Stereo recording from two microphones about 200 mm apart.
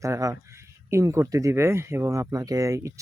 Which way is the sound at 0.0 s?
15° right (ahead or behind).